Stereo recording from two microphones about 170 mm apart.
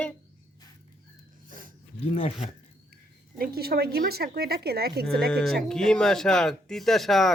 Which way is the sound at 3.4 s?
65° right (ahead or behind).